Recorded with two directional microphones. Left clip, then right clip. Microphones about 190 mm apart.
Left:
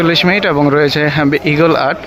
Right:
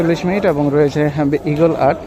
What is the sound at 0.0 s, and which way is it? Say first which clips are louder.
Speech: left 4 dB; 5° right (ahead or behind).